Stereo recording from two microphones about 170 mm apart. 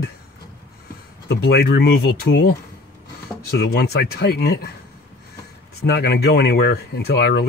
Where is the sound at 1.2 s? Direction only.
75° left (ahead or behind).